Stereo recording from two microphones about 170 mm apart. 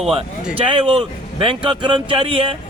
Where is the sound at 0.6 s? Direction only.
35° right (ahead or behind).